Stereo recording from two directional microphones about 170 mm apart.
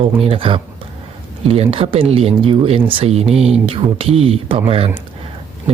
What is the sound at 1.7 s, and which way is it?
Speech, 35° right (ahead or behind).